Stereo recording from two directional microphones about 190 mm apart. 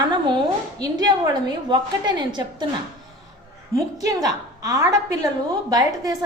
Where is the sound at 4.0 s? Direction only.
20° right (ahead or behind).